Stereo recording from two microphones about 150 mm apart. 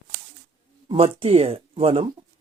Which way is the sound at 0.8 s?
40° right (ahead or behind).